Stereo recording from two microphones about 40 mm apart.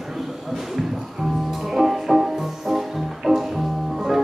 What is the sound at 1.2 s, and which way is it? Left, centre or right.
Music, centre.